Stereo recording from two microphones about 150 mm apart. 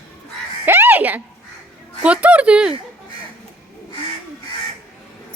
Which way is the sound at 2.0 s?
10° right (ahead or behind).